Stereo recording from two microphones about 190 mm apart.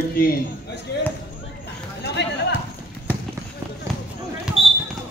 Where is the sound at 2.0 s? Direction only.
65° left (ahead or behind).